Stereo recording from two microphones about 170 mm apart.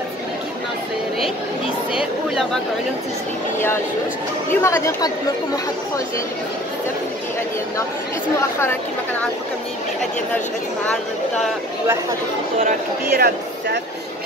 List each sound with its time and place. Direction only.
2.0 s speech: 5° right (ahead or behind)
4.6 s speech: 15° left (ahead or behind)
8.4 s speech: 15° left (ahead or behind)
12.6 s speech: 65° right (ahead or behind)